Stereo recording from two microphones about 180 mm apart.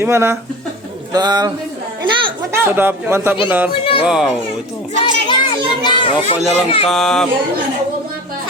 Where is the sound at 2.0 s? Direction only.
25° right (ahead or behind).